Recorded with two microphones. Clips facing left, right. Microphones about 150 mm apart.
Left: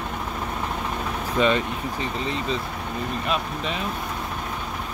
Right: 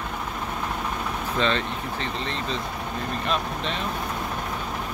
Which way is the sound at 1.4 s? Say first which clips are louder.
Left 4 dB; 10° left (ahead or behind).